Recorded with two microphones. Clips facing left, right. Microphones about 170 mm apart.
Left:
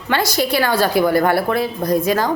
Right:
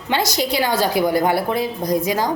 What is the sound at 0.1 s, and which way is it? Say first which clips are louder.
A woman's voice: left 2 dB; 20° right (ahead or behind).